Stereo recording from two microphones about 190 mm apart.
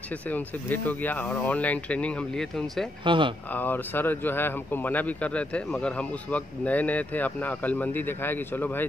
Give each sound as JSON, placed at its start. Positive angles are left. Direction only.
{"t": 0.3, "sound": "speech", "side_deg": 10}
{"t": 3.1, "sound": "speech", "side_deg": -25}
{"t": 3.5, "sound": "speech", "side_deg": 10}